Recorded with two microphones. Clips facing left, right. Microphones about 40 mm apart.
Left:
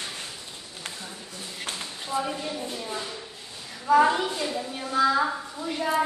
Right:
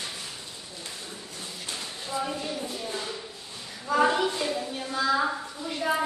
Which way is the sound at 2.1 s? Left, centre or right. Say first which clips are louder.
Left 3 dB; left.